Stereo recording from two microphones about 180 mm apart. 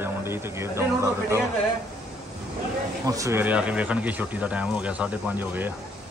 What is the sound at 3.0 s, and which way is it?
Speech, 20° right (ahead or behind).